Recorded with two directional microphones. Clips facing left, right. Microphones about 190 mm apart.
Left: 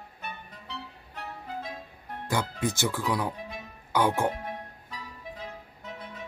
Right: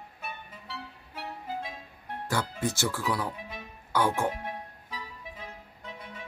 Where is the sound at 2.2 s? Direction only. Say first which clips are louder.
Left 1 dB; 15° left (ahead or behind).